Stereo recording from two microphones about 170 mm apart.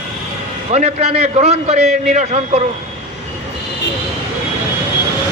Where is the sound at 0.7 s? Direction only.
40° right (ahead or behind).